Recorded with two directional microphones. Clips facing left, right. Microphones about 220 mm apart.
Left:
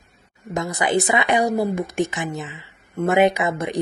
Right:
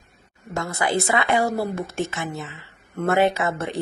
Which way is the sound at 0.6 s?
15° left (ahead or behind).